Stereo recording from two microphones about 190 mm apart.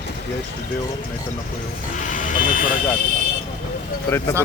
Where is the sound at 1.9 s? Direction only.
40° left (ahead or behind).